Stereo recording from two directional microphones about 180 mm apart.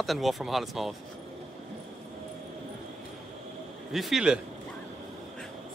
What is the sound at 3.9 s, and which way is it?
Speech, centre (ahead or behind).